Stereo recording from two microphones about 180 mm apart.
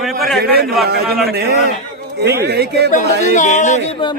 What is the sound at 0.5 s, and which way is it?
Speech, 60° right (ahead or behind).